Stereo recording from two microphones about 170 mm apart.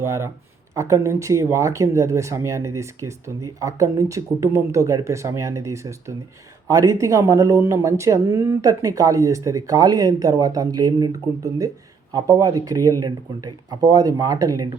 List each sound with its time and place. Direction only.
0.8 s speech: 15° right (ahead or behind)